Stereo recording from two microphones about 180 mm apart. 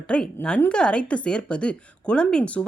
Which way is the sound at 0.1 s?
5° left (ahead or behind).